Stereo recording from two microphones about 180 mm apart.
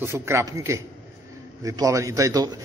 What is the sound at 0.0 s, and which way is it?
A man's voice, 15° right (ahead or behind).